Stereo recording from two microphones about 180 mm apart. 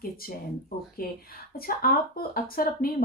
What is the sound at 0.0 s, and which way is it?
Speech, 55° left (ahead or behind).